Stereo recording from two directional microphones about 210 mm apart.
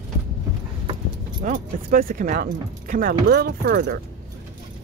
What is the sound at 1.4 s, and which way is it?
Speech, 40° right (ahead or behind).